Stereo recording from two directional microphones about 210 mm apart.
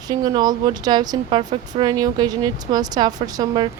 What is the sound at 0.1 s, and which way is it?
Speech, 20° right (ahead or behind).